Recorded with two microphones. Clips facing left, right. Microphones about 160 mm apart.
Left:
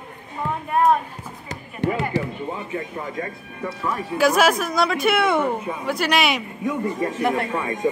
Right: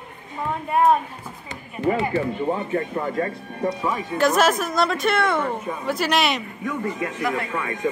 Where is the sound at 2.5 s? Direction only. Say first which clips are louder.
Right 5 dB; 45° right (ahead or behind).